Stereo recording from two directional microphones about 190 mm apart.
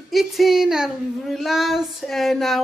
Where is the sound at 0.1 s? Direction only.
Centre (ahead or behind).